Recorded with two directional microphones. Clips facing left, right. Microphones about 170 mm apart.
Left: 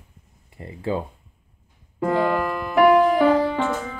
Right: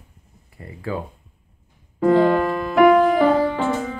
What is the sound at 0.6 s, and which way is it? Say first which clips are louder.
Speech: left 1 dB; 25° left (ahead or behind).